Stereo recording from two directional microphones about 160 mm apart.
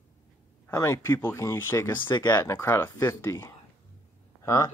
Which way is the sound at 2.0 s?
30° left (ahead or behind).